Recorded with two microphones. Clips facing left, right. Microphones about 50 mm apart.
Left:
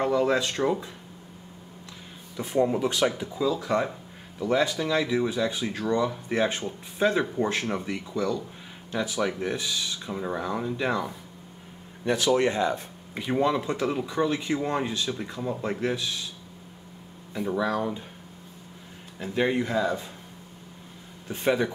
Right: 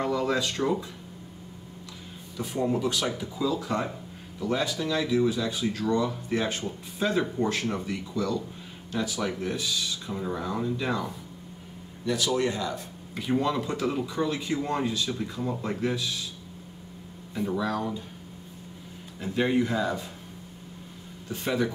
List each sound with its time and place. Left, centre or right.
0.0 s speech: left
2.3 s speech: left
17.6 s speech: left
19.1 s speech: centre
21.3 s speech: left